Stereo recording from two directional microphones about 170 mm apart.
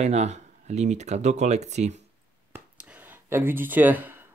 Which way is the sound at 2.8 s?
10° right (ahead or behind).